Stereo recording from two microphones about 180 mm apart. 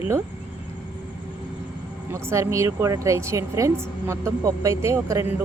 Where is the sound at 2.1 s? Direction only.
15° right (ahead or behind).